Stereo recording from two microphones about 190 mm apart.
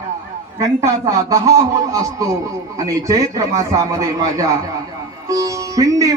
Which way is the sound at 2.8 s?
15° right (ahead or behind).